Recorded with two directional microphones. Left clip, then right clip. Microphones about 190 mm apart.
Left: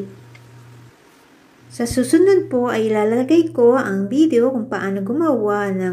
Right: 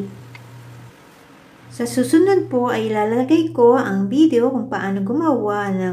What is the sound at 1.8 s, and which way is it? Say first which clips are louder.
A woman's voice: even; 15° left (ahead or behind).